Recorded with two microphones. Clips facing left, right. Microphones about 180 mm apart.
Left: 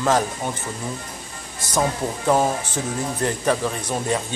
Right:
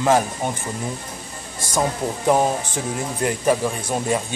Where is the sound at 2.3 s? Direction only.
15° right (ahead or behind).